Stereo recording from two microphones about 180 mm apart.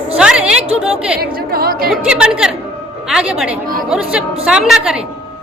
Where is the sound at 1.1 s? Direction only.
55° right (ahead or behind).